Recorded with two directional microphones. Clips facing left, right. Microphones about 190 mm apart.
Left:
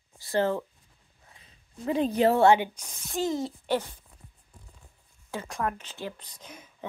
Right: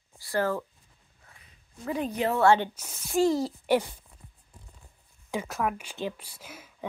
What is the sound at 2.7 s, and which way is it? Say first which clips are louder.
Speech: right 6 dB; 10° right (ahead or behind).